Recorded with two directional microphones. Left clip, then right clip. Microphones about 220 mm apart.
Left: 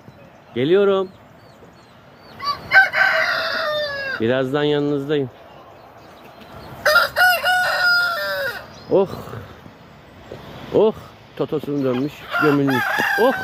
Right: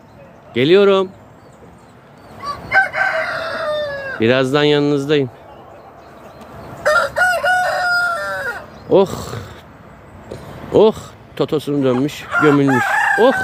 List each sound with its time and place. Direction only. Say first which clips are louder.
0.5 s speech: right 5 dB; 15° right (ahead or behind)
2.4 s chicken: left 1 dB; 10° right (ahead or behind)
6.8 s chicken: right 1 dB; centre (ahead or behind)
7.3 s chicken: right 2 dB; 25° left (ahead or behind); by 8.5 s 40° left (ahead or behind)
8.9 s speech: right 5 dB; 15° right (ahead or behind)
10.7 s speech: right 5 dB; 10° right (ahead or behind)
12.3 s chicken: right 4 dB; 40° left (ahead or behind)
12.6 s crowing: right 4 dB; 40° left (ahead or behind)